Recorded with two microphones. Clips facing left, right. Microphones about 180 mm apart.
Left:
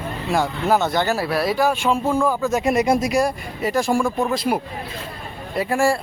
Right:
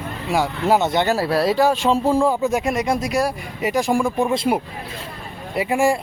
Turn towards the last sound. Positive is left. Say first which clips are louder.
# right 1 dB
turn(degrees=-15)  # may be behind; listen again after turning